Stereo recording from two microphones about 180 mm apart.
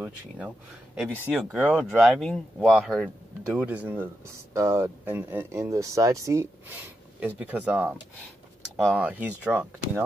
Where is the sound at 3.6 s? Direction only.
5° right (ahead or behind).